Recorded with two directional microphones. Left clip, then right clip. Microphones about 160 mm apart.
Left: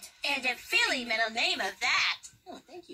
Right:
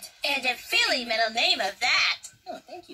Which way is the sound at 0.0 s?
20° right (ahead or behind).